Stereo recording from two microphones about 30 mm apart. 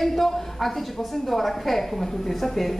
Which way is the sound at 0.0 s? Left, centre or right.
Centre.